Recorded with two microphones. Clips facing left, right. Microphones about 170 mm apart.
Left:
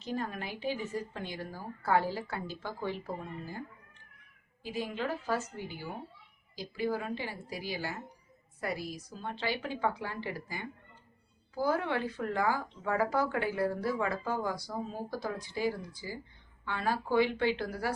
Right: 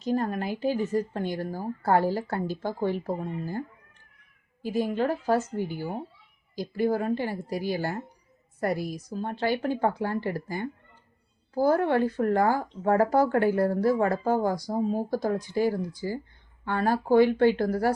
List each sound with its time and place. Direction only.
0.0 s speech: 45° right (ahead or behind)
4.6 s speech: 45° right (ahead or behind)